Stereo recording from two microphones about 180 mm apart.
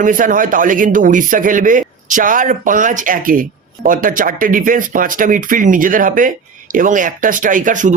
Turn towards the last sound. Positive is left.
turn(degrees=-45)  # may be behind; listen again after turning